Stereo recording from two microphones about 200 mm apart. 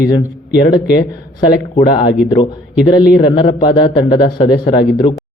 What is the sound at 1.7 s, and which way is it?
A man's voice, 25° left (ahead or behind).